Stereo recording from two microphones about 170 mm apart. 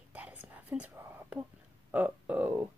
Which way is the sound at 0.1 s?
10° right (ahead or behind).